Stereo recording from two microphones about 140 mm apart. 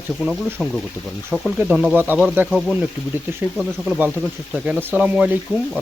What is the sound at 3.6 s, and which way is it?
Speech, centre (ahead or behind).